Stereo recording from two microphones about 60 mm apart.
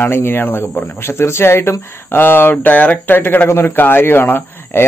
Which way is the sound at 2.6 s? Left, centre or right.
Left.